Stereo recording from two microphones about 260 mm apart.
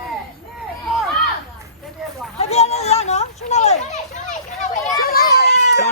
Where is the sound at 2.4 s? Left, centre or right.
Left.